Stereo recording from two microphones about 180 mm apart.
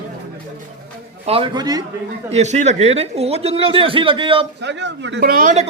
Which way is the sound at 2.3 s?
40° right (ahead or behind).